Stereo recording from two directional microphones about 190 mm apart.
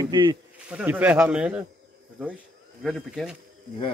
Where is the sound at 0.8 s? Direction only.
10° right (ahead or behind).